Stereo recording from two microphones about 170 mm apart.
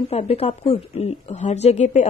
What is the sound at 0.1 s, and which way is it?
Speech, 35° left (ahead or behind).